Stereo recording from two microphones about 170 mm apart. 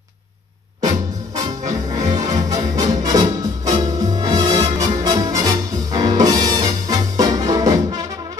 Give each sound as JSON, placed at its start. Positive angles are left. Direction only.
{"t": 0.8, "sound": "music", "side_deg": -20}